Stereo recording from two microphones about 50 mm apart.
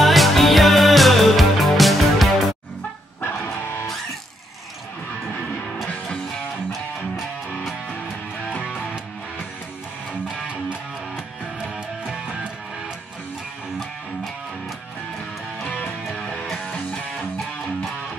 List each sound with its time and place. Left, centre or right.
0.0 s music: centre
11.1 s music: centre
16.2 s music: left